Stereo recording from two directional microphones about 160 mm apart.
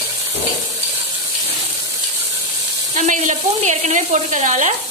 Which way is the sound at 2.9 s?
50° right (ahead or behind).